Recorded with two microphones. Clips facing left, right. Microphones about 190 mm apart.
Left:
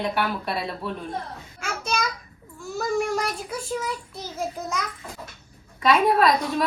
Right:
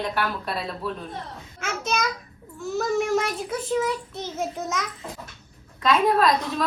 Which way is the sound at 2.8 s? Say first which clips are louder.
Right 2 dB; centre (ahead or behind).